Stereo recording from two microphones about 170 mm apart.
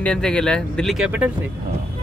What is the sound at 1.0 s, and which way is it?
Speech, 10° right (ahead or behind).